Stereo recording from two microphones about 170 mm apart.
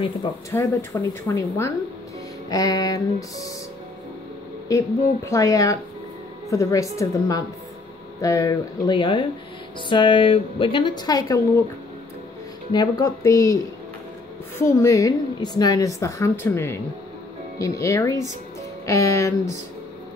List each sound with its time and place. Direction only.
0.5 s a woman's voice: 15° left (ahead or behind)
4.6 s a woman's voice: 20° left (ahead or behind)
12.7 s a woman's voice: 25° left (ahead or behind)
14.6 s a woman's voice: 15° left (ahead or behind)